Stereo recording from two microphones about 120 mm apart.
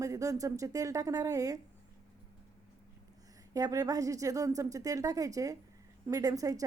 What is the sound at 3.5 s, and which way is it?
A woman's voice, 30° right (ahead or behind).